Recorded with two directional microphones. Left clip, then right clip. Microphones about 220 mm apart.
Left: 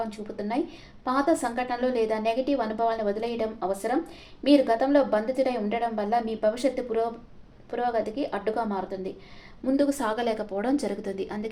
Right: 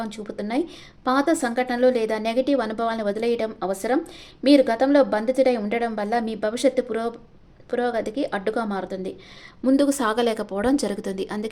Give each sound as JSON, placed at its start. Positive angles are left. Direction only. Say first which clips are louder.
{"t": 0.0, "sound": "a woman's voice", "louder": "right 2 dB", "side_deg": -45}